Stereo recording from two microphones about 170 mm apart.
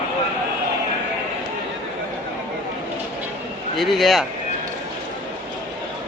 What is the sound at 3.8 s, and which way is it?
Speech, centre (ahead or behind).